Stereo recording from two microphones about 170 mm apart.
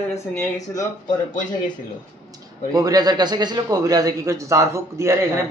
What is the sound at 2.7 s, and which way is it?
A man's voice, 20° right (ahead or behind).